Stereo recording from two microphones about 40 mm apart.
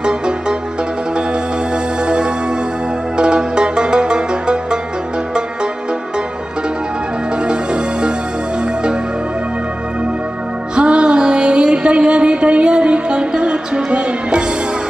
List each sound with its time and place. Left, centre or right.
3.2 s music: right
7.4 s music: right
10.8 s music: right